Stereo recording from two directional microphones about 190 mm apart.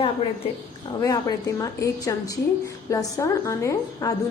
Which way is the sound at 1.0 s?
20° left (ahead or behind).